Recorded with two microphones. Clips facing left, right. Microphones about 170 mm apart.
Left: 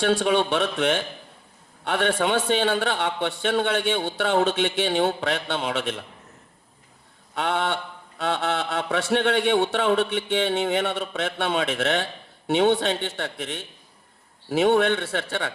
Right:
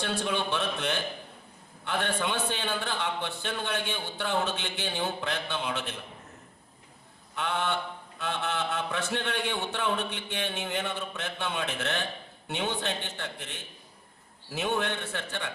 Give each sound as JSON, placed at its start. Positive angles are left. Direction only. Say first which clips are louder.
{"t": 0.0, "sound": "a man's voice", "louder": "left 9 dB", "side_deg": 75}
{"t": 7.3, "sound": "a sound", "louder": "left 5 dB", "side_deg": 75}
{"t": 8.2, "sound": "a man's voice", "louder": "left 6 dB", "side_deg": 80}